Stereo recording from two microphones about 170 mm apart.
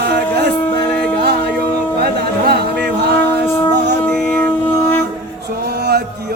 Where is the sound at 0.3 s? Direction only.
75° right (ahead or behind).